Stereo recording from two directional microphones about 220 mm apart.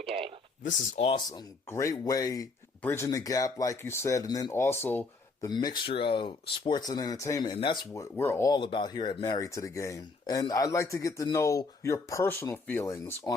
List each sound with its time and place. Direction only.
0.0 s a sound: 25° right (ahead or behind)
0.6 s speech: 25° left (ahead or behind)
1.3 s speech: 15° left (ahead or behind)
5.5 s speech: 20° left (ahead or behind)